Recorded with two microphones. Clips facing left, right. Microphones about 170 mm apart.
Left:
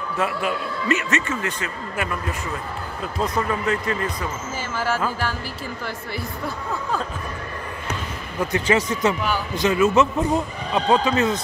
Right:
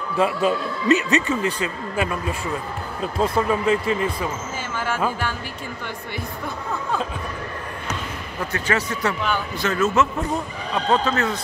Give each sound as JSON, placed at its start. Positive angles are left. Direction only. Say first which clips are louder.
{"t": 0.2, "sound": "speech", "louder": "right 5 dB", "side_deg": -25}
{"t": 3.2, "sound": "speech", "louder": "right 3 dB", "side_deg": -15}
{"t": 4.7, "sound": "speech", "louder": "left 2 dB", "side_deg": 5}
{"t": 8.5, "sound": "speech", "louder": "left 4 dB", "side_deg": 20}